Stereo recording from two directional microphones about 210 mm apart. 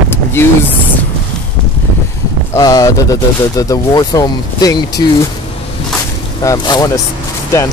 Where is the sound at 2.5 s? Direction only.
15° left (ahead or behind).